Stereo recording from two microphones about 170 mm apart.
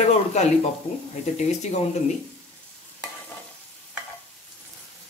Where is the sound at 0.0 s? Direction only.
40° left (ahead or behind).